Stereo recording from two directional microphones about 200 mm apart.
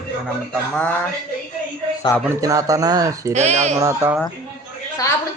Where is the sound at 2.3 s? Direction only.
15° right (ahead or behind).